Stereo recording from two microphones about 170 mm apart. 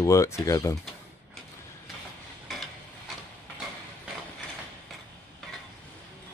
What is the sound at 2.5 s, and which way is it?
Mechanisms, centre (ahead or behind).